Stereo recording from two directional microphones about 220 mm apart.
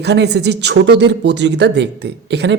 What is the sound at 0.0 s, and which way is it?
Speech, 50° right (ahead or behind).